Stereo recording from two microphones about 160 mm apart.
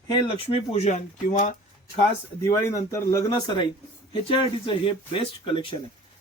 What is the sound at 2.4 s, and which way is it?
Speech, 20° left (ahead or behind).